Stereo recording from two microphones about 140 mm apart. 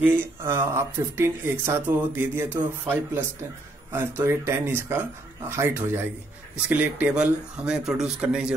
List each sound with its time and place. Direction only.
0.0 s speech: 15° right (ahead or behind)